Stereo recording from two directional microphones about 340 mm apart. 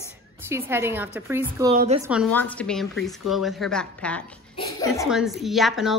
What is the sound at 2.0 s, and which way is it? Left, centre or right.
A woman's voice, centre.